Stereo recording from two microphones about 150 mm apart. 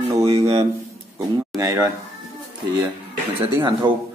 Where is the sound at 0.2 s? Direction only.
40° right (ahead or behind).